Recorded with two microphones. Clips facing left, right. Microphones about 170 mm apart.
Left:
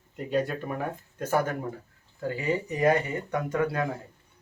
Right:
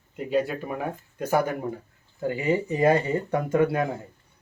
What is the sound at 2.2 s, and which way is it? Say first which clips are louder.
Speech: right 4 dB; 20° right (ahead or behind).